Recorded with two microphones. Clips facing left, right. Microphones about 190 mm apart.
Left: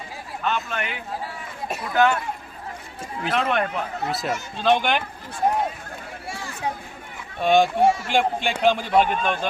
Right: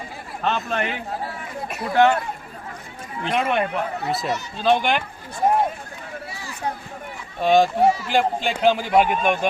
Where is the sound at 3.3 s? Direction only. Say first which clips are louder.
Right 1 dB; 10° right (ahead or behind).